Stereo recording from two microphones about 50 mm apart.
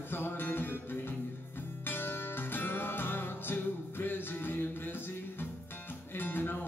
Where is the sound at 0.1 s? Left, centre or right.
Left.